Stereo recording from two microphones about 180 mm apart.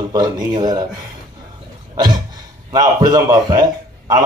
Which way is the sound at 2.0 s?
25° right (ahead or behind).